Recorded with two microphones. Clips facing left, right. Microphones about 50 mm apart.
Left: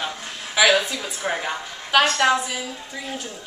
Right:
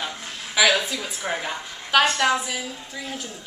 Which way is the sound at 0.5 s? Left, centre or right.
Centre.